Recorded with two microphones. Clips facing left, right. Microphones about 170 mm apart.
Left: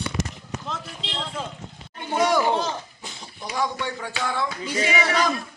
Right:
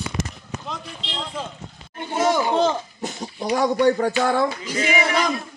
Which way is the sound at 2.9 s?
45° right (ahead or behind).